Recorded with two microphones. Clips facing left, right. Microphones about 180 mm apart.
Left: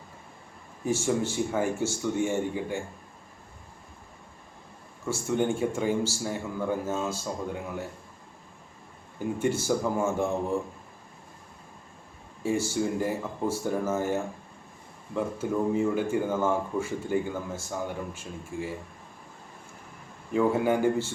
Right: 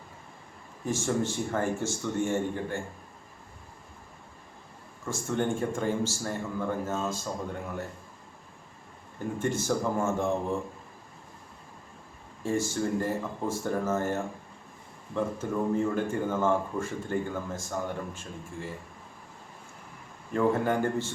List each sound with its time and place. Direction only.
0.9 s speech: 10° left (ahead or behind)
5.0 s speech: 10° left (ahead or behind)
9.1 s speech: 10° left (ahead or behind)
12.4 s speech: 10° left (ahead or behind)
20.3 s speech: 10° left (ahead or behind)